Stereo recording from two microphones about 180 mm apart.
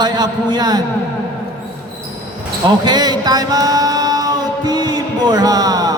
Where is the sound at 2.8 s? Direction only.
20° right (ahead or behind).